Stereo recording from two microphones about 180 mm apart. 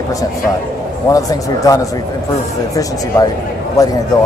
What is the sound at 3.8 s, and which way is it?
Speech, 20° left (ahead or behind).